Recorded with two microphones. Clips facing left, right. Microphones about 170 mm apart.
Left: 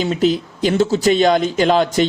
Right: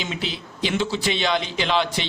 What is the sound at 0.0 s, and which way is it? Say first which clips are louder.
Speech: left 13 dB; 40° left (ahead or behind).